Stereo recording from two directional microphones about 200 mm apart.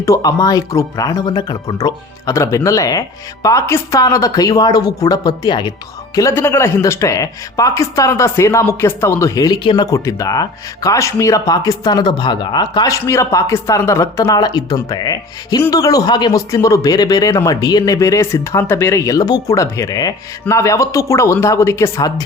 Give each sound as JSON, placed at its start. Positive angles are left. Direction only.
{"t": 0.0, "sound": "speech", "side_deg": 15}